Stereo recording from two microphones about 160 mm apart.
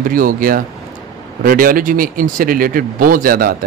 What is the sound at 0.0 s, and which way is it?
A man's voice, 60° right (ahead or behind).